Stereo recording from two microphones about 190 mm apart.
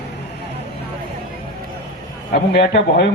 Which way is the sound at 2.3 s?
65° left (ahead or behind).